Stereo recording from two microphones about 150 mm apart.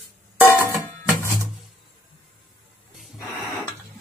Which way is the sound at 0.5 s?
20° left (ahead or behind).